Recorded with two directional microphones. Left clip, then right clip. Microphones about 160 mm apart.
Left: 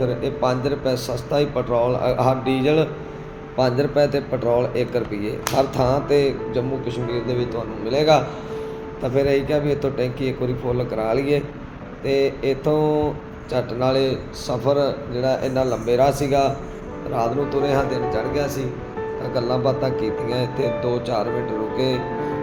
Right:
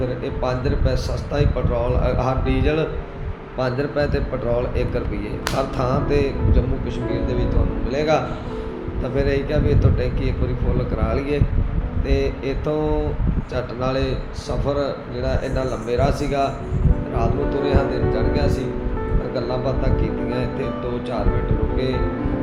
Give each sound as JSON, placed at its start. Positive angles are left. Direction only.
{"t": 0.0, "sound": "speech", "side_deg": 35}